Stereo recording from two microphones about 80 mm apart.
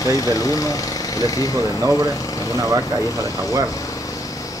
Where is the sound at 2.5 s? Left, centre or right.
Right.